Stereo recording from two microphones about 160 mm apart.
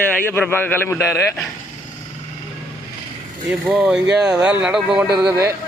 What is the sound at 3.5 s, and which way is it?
Speech, 5° right (ahead or behind).